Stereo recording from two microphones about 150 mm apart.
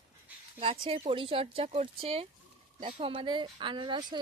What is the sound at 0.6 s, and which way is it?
A woman's voice, 40° right (ahead or behind).